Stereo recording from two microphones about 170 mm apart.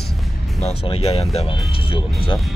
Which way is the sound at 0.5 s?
35° left (ahead or behind).